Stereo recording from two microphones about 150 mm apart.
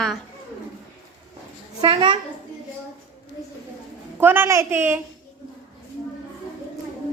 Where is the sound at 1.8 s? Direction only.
30° right (ahead or behind).